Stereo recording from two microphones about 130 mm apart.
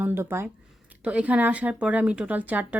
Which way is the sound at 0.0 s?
20° right (ahead or behind).